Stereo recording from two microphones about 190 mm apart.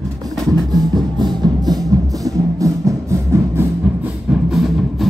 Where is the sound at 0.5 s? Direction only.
20° right (ahead or behind).